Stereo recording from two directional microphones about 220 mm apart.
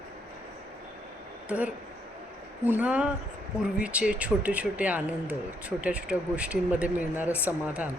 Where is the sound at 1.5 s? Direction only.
5° right (ahead or behind).